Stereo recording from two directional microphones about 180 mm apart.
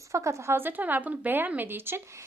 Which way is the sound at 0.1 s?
15° right (ahead or behind).